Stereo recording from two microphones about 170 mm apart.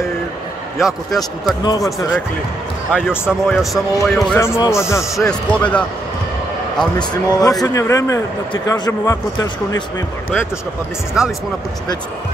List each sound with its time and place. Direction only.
0.7 s speech: centre (ahead or behind)
1.6 s speech: 20° left (ahead or behind)
2.9 s speech: 5° left (ahead or behind)
4.1 s a man's voice: 15° left (ahead or behind)
5.1 s a man's voice: 5° left (ahead or behind)
7.0 s a man's voice: 25° left (ahead or behind)